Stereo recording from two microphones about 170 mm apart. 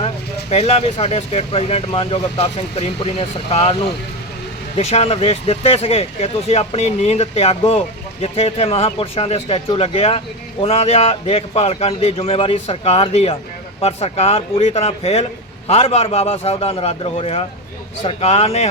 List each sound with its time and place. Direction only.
0.5 s speech: 35° left (ahead or behind)
4.8 s speech: 40° left (ahead or behind)